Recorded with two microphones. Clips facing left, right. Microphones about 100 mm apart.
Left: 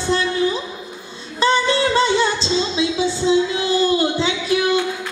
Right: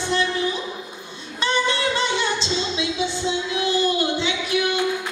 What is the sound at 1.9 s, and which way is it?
Music, 35° left (ahead or behind).